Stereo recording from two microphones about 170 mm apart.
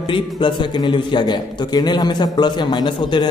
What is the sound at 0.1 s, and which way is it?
A man's voice, 25° left (ahead or behind).